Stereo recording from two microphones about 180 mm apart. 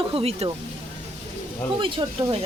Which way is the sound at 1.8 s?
30° right (ahead or behind).